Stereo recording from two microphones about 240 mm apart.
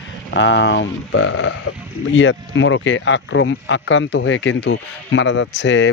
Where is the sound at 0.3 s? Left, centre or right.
Left.